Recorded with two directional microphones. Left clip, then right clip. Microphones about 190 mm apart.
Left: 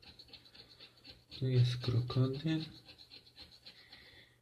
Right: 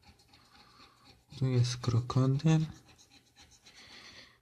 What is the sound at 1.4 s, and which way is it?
Speech, 40° right (ahead or behind).